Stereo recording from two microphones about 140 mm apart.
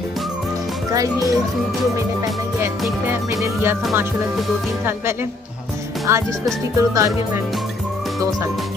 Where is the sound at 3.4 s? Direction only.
15° right (ahead or behind).